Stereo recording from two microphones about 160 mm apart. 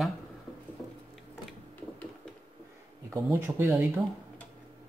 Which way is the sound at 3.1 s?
15° right (ahead or behind).